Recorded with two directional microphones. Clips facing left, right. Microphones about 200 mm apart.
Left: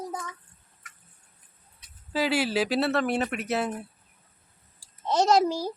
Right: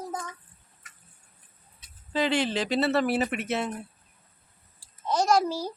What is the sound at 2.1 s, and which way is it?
Speech, 5° left (ahead or behind).